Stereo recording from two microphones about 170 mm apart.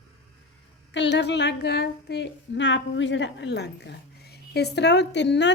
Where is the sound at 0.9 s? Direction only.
90° left.